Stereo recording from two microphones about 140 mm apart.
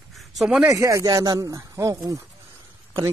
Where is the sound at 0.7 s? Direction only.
25° right (ahead or behind).